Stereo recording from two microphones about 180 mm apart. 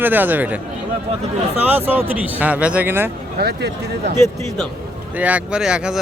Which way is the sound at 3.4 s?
65° right (ahead or behind).